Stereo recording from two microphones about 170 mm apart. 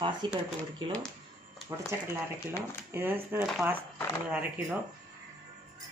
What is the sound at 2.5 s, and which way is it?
Speech, 15° left (ahead or behind).